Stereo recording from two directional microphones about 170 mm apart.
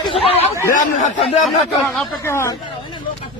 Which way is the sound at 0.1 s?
35° left (ahead or behind).